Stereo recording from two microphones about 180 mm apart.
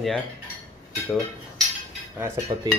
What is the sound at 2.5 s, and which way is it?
Speech, 20° right (ahead or behind).